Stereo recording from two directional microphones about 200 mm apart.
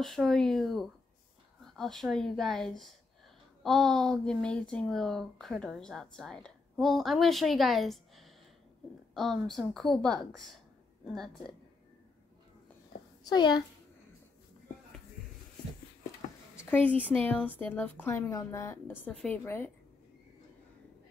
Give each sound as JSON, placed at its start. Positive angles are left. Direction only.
{"t": 0.0, "sound": "speech", "side_deg": 0}
{"t": 13.3, "sound": "a child's voice", "side_deg": 20}
{"t": 16.7, "sound": "a woman's voice", "side_deg": 10}